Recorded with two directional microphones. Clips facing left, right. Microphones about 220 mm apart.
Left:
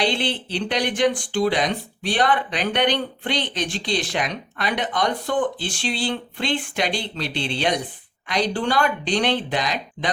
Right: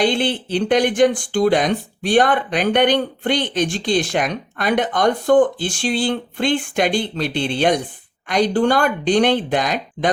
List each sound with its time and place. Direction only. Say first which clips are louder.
0.0 s speech: right 5 dB; 50° right (ahead or behind)